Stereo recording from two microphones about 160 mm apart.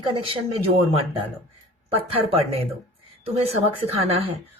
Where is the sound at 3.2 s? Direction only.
40° right (ahead or behind).